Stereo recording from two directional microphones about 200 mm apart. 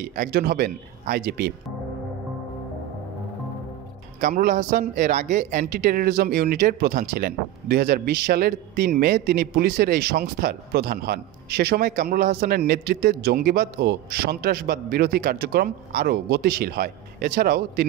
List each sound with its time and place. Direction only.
0.0 s speech: 45° right (ahead or behind)
4.2 s speech: 45° right (ahead or behind)